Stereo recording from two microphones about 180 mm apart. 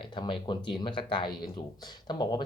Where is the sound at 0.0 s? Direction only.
25° left (ahead or behind).